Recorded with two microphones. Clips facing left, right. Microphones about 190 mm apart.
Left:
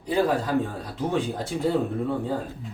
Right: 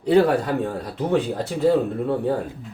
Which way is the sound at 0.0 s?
65° right (ahead or behind).